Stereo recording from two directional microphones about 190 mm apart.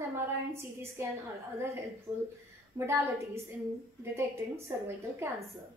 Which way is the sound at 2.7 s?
15° right (ahead or behind).